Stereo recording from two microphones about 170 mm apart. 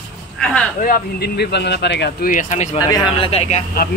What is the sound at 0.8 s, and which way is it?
Speech, 60° left (ahead or behind).